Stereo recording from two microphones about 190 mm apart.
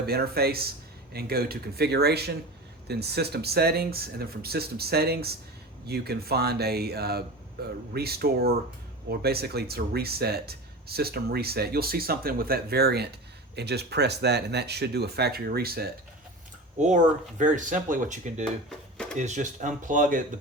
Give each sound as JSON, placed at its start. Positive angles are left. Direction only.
{"t": 0.0, "sound": "speech", "side_deg": -55}
{"t": 16.8, "sound": "speech", "side_deg": -40}
{"t": 18.7, "sound": "a sound", "side_deg": 5}
{"t": 19.1, "sound": "speech", "side_deg": -40}